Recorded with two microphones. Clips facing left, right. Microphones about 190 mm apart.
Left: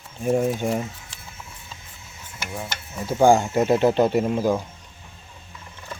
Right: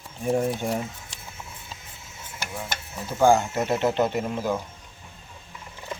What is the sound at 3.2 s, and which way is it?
Speech, 15° left (ahead or behind).